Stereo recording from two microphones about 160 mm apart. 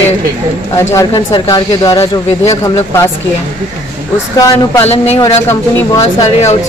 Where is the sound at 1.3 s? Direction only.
25° left (ahead or behind).